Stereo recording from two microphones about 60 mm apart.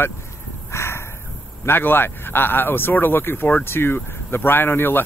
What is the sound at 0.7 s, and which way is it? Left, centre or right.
Crow, left.